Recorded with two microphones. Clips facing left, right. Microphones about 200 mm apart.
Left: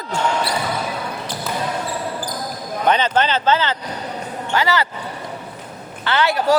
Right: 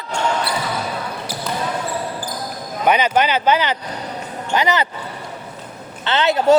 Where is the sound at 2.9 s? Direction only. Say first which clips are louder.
Right 1 dB; 10° right (ahead or behind).